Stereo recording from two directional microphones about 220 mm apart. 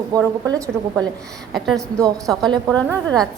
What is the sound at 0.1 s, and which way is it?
Speech, 15° right (ahead or behind).